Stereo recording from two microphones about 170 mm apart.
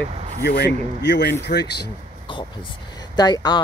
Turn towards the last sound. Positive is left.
turn(degrees=25)  # may be behind; listen again after turning